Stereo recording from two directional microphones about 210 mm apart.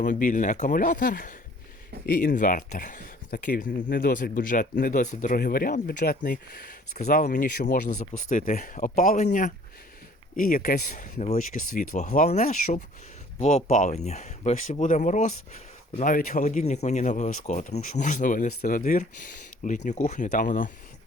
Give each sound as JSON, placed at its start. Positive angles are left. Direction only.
{"t": 0.0, "sound": "speech", "side_deg": 40}